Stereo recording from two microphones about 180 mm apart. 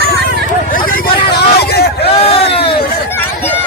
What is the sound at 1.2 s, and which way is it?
Vehicle, 60° left (ahead or behind).